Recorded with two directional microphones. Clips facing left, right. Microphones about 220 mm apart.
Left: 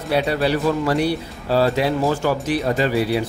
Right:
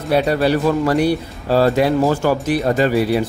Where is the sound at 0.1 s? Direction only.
45° right (ahead or behind).